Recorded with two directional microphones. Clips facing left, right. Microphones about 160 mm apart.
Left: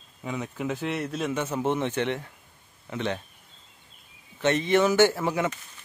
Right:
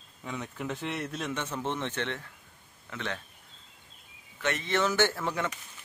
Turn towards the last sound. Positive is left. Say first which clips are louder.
# left 6 dB
turn(degrees=10)  # may be behind; listen again after turning